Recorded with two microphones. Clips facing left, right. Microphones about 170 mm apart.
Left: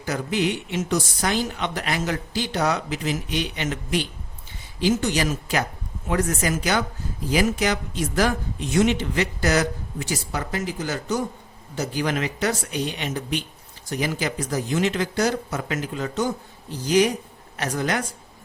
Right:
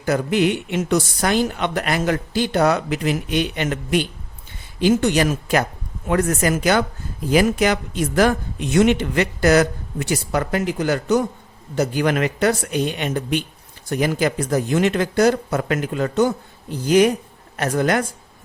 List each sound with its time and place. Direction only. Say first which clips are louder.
0.0 s a woman's voice: right 6 dB; 55° right (ahead or behind)